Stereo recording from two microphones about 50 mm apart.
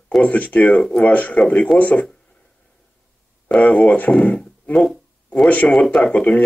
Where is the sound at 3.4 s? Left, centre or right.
Left.